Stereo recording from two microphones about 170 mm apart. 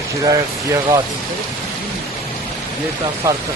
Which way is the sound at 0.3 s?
20° right (ahead or behind).